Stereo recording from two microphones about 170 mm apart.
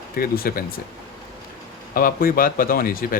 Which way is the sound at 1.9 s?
60° left (ahead or behind).